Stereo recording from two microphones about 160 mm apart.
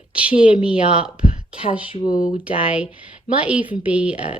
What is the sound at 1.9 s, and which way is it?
Speech, 25° left (ahead or behind).